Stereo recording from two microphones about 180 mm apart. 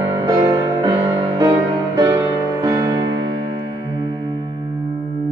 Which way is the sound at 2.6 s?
20° right (ahead or behind).